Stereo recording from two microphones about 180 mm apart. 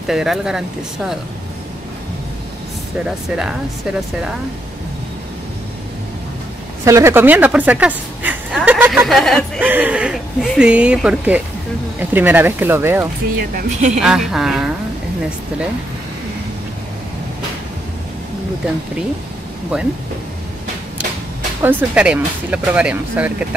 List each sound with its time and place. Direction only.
0.0 s speech: centre (ahead or behind)
6.8 s speech: 15° right (ahead or behind); by 9.4 s centre (ahead or behind)
9.6 s speech: 10° right (ahead or behind)
13.4 s speech: 50° right (ahead or behind)
13.9 s speech: centre (ahead or behind)
19.7 s speech: 5° right (ahead or behind)
21.6 s speech: 10° right (ahead or behind)